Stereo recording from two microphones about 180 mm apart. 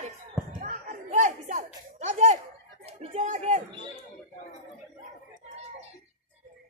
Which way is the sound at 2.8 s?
35° right (ahead or behind).